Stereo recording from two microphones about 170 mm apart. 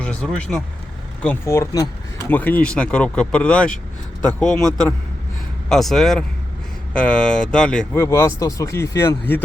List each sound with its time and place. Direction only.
0.0 s speech: 5° left (ahead or behind)
8.0 s speech: 15° left (ahead or behind)